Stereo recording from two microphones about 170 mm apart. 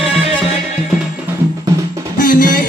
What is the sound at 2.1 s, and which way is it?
Music, 50° left (ahead or behind).